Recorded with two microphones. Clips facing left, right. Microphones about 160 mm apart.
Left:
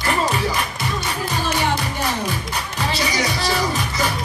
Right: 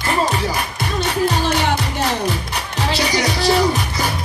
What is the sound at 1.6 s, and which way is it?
Music, 70° right (ahead or behind).